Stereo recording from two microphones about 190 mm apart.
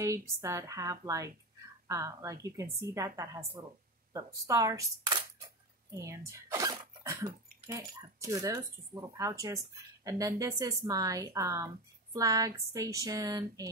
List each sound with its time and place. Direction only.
0.0 s speech: 15° right (ahead or behind)